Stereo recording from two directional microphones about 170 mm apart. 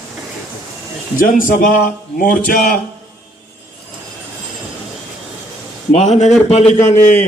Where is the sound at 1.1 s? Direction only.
50° left (ahead or behind).